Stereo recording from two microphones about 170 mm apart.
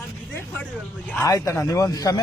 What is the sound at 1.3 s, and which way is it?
Speech, 20° left (ahead or behind).